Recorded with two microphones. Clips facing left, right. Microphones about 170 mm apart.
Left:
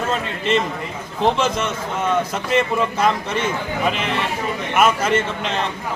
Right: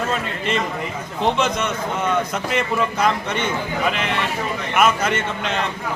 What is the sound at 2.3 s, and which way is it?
Speech, 5° left (ahead or behind).